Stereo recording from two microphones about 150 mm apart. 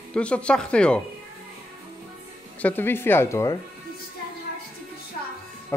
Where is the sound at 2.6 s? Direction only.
15° left (ahead or behind).